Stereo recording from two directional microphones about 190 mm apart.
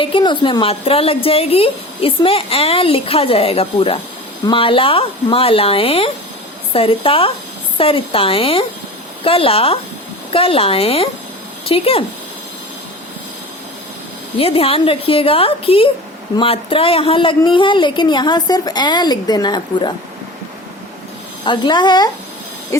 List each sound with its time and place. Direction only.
0.0 s speech: 25° left (ahead or behind)
14.3 s speech: 30° left (ahead or behind)
21.4 s speech: 25° left (ahead or behind)
22.7 s owl: 15° left (ahead or behind)